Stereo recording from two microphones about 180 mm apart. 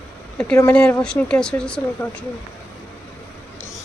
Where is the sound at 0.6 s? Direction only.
10° left (ahead or behind).